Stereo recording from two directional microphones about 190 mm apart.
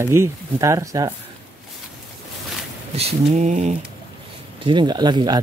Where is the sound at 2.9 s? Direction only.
35° right (ahead or behind).